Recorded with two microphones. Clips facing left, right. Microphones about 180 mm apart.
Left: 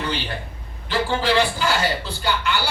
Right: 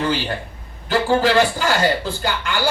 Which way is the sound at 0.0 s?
45° right (ahead or behind).